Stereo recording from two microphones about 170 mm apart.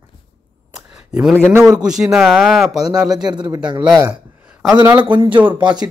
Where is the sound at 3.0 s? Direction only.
25° right (ahead or behind).